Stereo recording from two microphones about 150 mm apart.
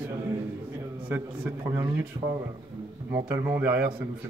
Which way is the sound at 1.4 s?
15° right (ahead or behind).